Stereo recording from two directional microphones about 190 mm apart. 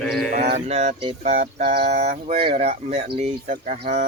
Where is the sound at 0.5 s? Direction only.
35° right (ahead or behind).